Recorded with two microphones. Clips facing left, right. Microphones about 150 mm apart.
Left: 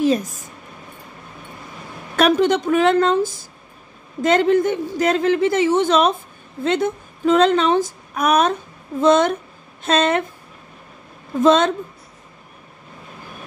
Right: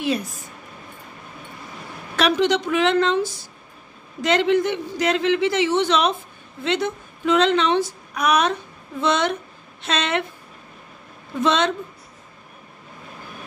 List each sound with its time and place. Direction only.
0.0 s a woman's voice: 45° left (ahead or behind)
2.1 s a woman's voice: 50° left (ahead or behind)
11.4 s a woman's voice: 45° left (ahead or behind)